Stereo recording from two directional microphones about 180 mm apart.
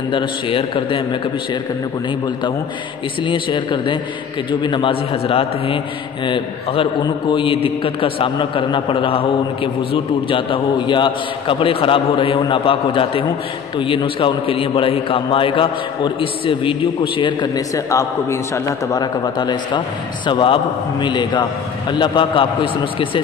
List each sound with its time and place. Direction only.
0.1 s a man's voice: 30° left (ahead or behind)